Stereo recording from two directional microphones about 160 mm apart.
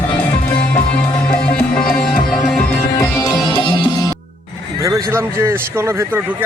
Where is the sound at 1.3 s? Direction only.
5° left (ahead or behind).